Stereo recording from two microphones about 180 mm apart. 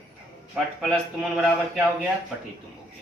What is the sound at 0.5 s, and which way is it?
A man's voice, 5° right (ahead or behind).